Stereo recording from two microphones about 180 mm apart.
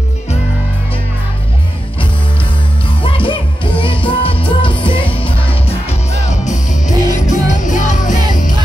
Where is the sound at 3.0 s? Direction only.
30° left (ahead or behind).